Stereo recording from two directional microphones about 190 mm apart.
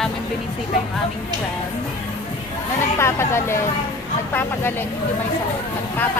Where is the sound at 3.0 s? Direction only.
15° left (ahead or behind).